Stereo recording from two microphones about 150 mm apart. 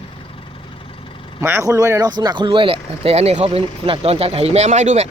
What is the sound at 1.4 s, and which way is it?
Speech, 20° right (ahead or behind).